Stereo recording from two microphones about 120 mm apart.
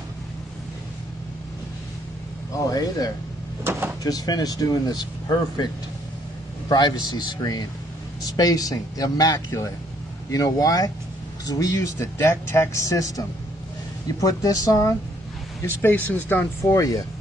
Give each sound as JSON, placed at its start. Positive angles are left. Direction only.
{"t": 2.5, "sound": "speech", "side_deg": 30}
{"t": 6.7, "sound": "speech", "side_deg": 35}
{"t": 14.2, "sound": "speech", "side_deg": 30}
{"t": 15.6, "sound": "speech", "side_deg": 15}